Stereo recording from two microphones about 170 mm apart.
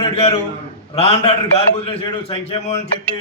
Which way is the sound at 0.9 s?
35° left (ahead or behind).